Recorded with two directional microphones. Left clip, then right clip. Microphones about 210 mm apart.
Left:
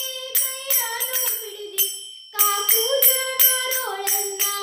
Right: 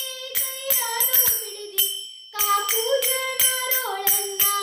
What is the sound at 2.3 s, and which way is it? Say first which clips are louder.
Jingle bell: even; 15° left (ahead or behind).